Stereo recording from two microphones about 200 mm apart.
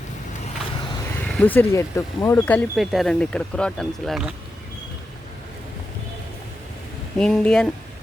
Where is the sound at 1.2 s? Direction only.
5° left (ahead or behind).